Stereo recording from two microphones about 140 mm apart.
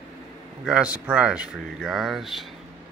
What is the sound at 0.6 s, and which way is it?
Speech, 5° right (ahead or behind).